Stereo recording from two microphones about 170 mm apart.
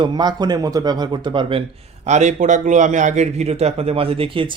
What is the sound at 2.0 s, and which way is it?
A man's voice, 45° right (ahead or behind).